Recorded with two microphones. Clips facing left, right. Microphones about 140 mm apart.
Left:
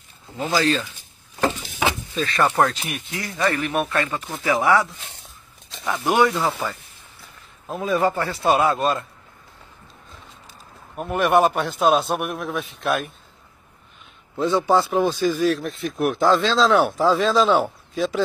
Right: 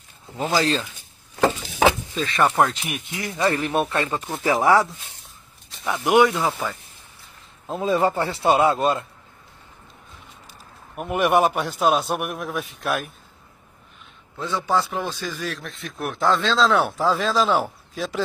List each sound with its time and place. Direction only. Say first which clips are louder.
0.4 s speech: left 1 dB; 30° right (ahead or behind)
2.1 s a man's voice: left 1 dB; 20° right (ahead or behind)
2.4 s speech: even; 5° right (ahead or behind)
3.2 s a man's voice: right 1 dB; 20° right (ahead or behind)
5.9 s speech: right 2 dB; 10° right (ahead or behind)
7.6 s a man's voice: even; 25° right (ahead or behind)
11.0 s a man's voice: left 1 dB; 10° right (ahead or behind)
14.5 s speech: left 4 dB; 30° left (ahead or behind)
15.0 s speech: left 9 dB; 15° left (ahead or behind)
16.0 s speech: left 4 dB; 5° left (ahead or behind)